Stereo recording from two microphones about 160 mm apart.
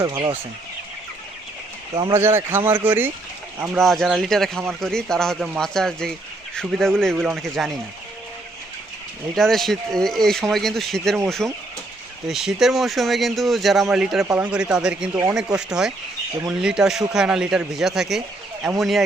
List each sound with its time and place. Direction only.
0.0 s speech: 20° right (ahead or behind)
2.0 s speech: 20° right (ahead or behind)
3.8 s speech: centre (ahead or behind)
9.3 s speech: centre (ahead or behind)